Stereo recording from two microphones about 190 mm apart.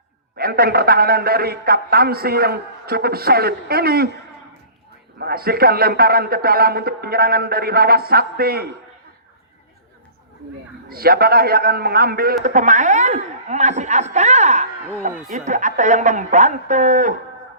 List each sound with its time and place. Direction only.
0.3 s a man's voice: 55° right (ahead or behind)
5.2 s a man's voice: 55° right (ahead or behind)
10.8 s a man's voice: 50° right (ahead or behind)
12.4 s a man's voice: 40° right (ahead or behind)